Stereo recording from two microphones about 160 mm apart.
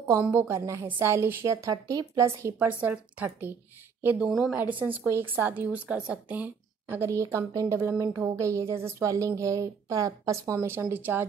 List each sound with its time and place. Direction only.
0.2 s a woman's voice: 15° right (ahead or behind)
4.8 s a woman's voice: 15° right (ahead or behind)